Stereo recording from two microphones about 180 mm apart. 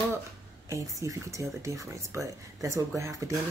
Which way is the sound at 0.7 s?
20° right (ahead or behind).